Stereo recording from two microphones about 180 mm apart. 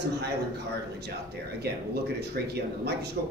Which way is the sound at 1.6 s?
65° right (ahead or behind).